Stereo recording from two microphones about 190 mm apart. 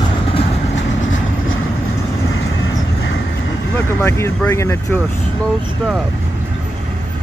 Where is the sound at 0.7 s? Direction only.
90° left.